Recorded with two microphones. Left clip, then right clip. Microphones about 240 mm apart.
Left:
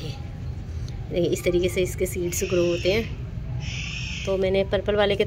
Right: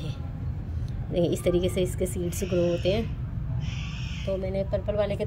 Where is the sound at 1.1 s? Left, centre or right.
Centre.